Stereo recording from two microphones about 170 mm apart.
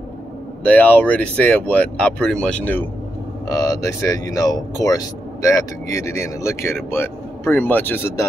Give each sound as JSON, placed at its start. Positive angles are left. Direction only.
{"t": 0.7, "sound": "speech", "side_deg": 10}
{"t": 3.4, "sound": "speech", "side_deg": 20}